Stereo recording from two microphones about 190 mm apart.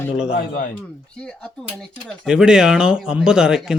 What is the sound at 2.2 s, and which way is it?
A man's voice, 5° right (ahead or behind).